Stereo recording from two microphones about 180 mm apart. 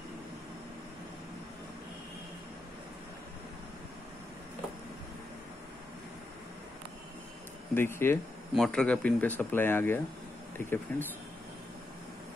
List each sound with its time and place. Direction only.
7.7 s speech: 10° left (ahead or behind)